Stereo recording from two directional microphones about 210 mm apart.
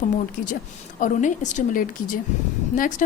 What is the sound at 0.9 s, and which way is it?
Speech, 35° left (ahead or behind).